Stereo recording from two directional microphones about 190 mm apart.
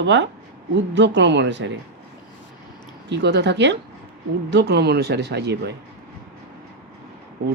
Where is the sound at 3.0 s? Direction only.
65° right (ahead or behind).